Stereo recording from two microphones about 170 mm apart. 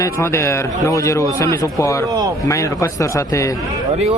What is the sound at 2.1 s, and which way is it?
Speech, 20° right (ahead or behind).